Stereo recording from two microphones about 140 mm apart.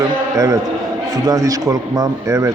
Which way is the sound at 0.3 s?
25° right (ahead or behind).